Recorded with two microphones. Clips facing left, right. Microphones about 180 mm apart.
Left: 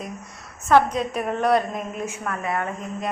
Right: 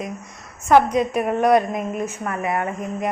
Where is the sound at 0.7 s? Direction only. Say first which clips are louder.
Right 3 dB; 10° right (ahead or behind).